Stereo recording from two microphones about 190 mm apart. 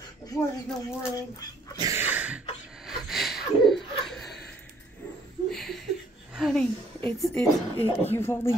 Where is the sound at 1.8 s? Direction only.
15° right (ahead or behind).